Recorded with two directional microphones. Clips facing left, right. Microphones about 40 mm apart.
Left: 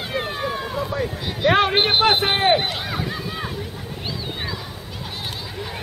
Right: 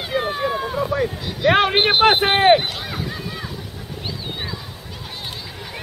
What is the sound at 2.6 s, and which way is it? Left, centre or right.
Speech, centre.